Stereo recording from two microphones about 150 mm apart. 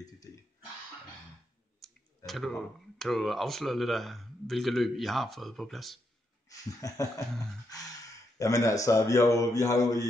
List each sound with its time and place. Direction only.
1.8 s speech: centre (ahead or behind)
6.5 s speech: 25° left (ahead or behind)